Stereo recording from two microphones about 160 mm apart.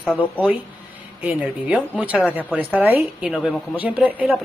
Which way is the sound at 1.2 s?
10° right (ahead or behind).